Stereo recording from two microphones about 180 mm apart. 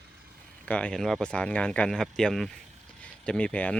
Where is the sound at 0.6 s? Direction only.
5° left (ahead or behind).